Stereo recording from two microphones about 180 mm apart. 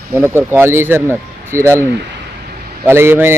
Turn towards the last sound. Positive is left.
turn(degrees=-10)  # may be behind; listen again after turning